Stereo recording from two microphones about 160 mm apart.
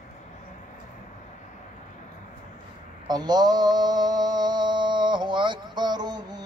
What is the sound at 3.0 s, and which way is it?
Mantra, 25° right (ahead or behind).